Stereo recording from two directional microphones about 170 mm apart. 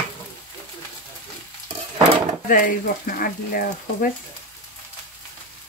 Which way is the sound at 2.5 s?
55° left (ahead or behind).